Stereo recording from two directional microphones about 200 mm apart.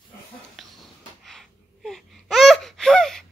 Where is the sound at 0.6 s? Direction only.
Centre (ahead or behind).